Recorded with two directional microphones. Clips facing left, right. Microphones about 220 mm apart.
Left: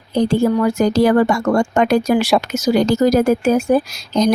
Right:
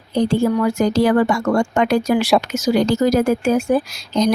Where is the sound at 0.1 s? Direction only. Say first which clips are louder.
Left 2 dB; 40° left (ahead or behind).